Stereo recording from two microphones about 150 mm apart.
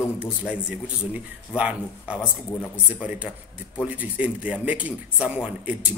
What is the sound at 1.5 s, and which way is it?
A man's voice, 10° right (ahead or behind).